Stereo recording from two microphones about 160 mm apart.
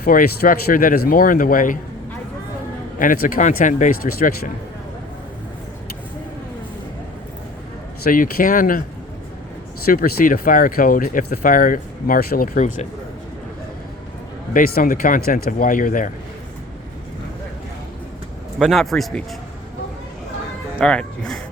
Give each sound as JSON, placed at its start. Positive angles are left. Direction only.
{"t": 0.0, "sound": "speech", "side_deg": 60}
{"t": 3.0, "sound": "speech", "side_deg": 60}
{"t": 8.0, "sound": "speech", "side_deg": 60}
{"t": 9.8, "sound": "speech", "side_deg": 60}
{"t": 14.5, "sound": "speech", "side_deg": 60}
{"t": 18.6, "sound": "a man's voice", "side_deg": 0}
{"t": 20.7, "sound": "speech", "side_deg": 5}